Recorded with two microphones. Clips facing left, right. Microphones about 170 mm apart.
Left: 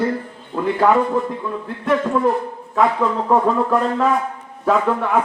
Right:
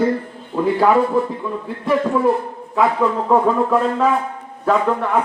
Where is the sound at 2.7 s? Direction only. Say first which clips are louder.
Right 1 dB; centre (ahead or behind).